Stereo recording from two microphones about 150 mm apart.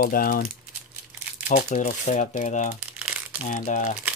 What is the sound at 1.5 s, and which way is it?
Speech, 55° left (ahead or behind).